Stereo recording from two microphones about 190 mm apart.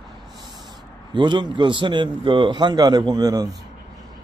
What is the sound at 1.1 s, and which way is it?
Speech, 25° right (ahead or behind).